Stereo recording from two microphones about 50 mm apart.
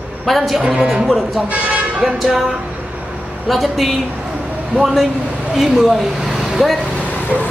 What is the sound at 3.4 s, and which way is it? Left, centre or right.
Speech, centre.